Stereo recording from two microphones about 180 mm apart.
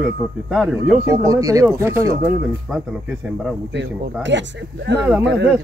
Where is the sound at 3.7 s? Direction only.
80° right.